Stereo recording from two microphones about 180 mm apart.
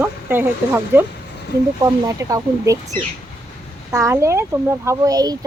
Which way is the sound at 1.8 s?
15° right (ahead or behind).